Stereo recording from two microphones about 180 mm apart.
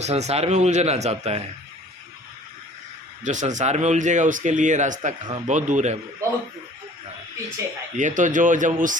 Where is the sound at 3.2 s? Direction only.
40° right (ahead or behind).